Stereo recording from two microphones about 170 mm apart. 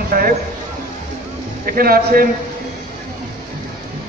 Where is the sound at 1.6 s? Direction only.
60° right (ahead or behind).